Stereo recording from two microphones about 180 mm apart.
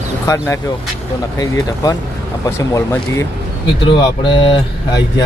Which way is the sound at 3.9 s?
25° left (ahead or behind).